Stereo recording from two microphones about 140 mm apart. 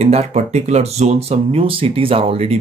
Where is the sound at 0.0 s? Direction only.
50° right (ahead or behind).